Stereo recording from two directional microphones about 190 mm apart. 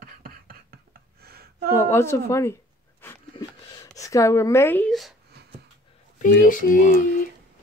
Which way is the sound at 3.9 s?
15° left (ahead or behind).